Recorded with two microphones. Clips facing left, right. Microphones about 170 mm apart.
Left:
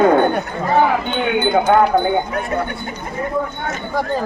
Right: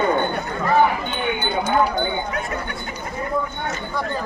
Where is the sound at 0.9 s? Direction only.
75° left (ahead or behind).